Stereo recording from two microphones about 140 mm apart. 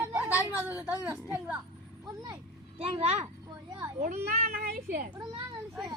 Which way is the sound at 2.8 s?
45° right (ahead or behind).